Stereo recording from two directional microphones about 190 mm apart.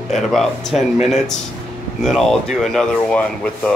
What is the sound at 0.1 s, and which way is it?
Speech, centre (ahead or behind).